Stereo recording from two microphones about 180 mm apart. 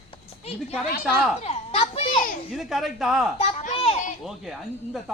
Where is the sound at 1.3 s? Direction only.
35° left (ahead or behind).